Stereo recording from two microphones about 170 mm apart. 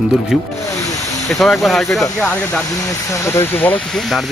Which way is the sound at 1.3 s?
Centre (ahead or behind).